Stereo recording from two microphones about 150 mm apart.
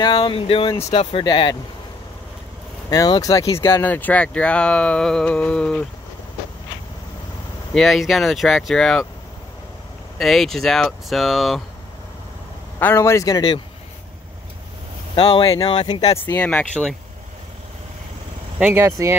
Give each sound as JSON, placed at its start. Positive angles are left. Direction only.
{"t": 0.0, "sound": "speech", "side_deg": 30}
{"t": 2.9, "sound": "speech", "side_deg": 25}
{"t": 7.7, "sound": "speech", "side_deg": 0}
{"t": 10.1, "sound": "speech", "side_deg": 0}
{"t": 12.7, "sound": "a man's voice", "side_deg": 15}
{"t": 15.1, "sound": "speech", "side_deg": 35}
{"t": 16.3, "sound": "speech", "side_deg": 10}
{"t": 18.6, "sound": "speech", "side_deg": -15}